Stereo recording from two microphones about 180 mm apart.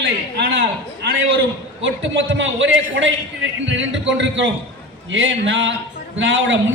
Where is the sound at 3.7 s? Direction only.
90° right.